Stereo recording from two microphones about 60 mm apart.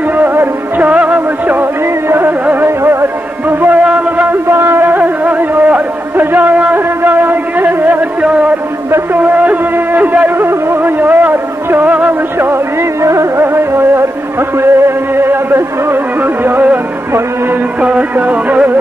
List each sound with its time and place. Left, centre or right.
0.2 s music: right
0.8 s music: right
2.0 s music: right
3.8 s a sound: right
4.3 s a sound: right
7.0 s music: right
8.9 s a sound: right
13.0 s music: right
13.4 s music: right
17.8 s music: right